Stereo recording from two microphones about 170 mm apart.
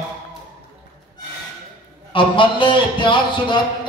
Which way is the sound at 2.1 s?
30° left (ahead or behind).